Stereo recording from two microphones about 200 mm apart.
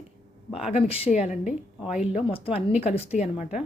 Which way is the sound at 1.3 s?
35° left (ahead or behind).